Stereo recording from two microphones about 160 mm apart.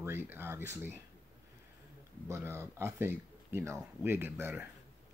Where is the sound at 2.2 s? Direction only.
15° right (ahead or behind).